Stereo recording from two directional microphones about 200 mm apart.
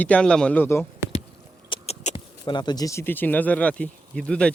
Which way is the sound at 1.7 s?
35° left (ahead or behind).